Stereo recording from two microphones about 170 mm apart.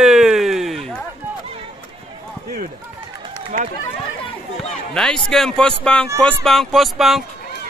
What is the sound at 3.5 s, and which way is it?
Speech, 45° right (ahead or behind).